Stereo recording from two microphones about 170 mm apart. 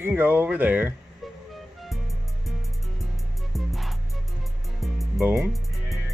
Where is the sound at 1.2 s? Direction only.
Centre (ahead or behind).